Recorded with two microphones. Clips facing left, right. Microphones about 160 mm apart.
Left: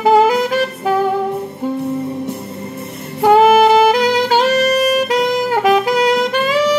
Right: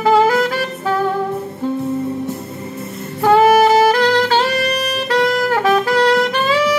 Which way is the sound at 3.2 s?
15° left (ahead or behind).